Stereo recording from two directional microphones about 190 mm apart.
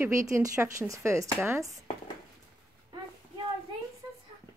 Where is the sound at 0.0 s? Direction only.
15° right (ahead or behind).